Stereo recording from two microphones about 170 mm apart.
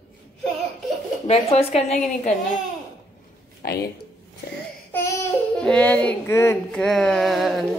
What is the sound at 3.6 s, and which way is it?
Speech, 60° left (ahead or behind).